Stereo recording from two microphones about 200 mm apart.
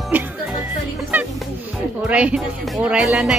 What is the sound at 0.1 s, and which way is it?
Music, 10° right (ahead or behind).